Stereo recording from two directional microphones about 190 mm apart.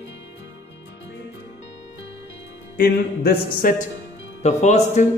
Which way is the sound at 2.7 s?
50° left (ahead or behind).